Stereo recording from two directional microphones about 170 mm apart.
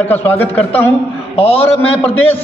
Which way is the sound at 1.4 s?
35° left (ahead or behind).